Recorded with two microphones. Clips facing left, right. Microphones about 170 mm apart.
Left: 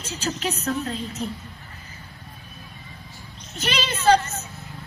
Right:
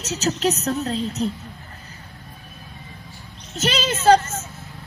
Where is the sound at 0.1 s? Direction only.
40° right (ahead or behind).